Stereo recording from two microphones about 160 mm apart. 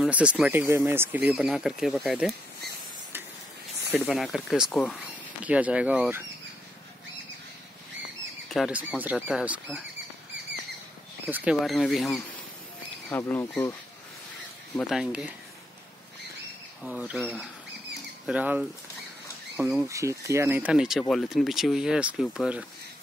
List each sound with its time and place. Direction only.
0.0 s speech: 5° right (ahead or behind)
4.0 s speech: centre (ahead or behind)
5.4 s speech: 10° right (ahead or behind)
8.5 s speech: 5° right (ahead or behind)
11.2 s speech: 10° right (ahead or behind)
11.6 s speech: centre (ahead or behind)
13.1 s speech: 15° left (ahead or behind)
14.8 s speech: 5° right (ahead or behind)
16.8 s speech: 5° right (ahead or behind)
18.2 s speech: 10° right (ahead or behind)
19.9 s speech: 20° right (ahead or behind)
20.7 s speech: 5° right (ahead or behind)